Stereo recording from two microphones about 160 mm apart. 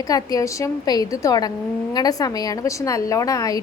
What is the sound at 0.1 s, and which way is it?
A woman's voice, 20° left (ahead or behind).